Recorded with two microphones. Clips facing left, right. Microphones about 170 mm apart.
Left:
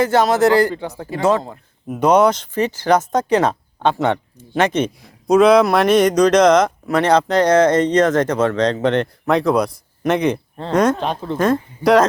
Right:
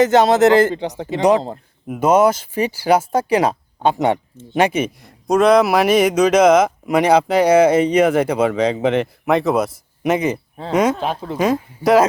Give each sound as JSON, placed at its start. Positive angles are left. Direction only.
{"t": 0.0, "sound": "speech", "side_deg": -20}
{"t": 1.9, "sound": "a man's voice", "side_deg": -5}